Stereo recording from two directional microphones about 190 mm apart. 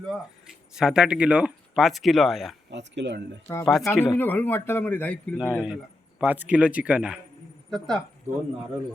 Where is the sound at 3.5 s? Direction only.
10° left (ahead or behind).